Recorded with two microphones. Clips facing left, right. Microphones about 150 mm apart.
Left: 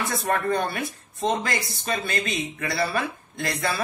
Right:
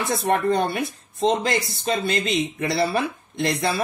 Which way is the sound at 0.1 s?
25° right (ahead or behind).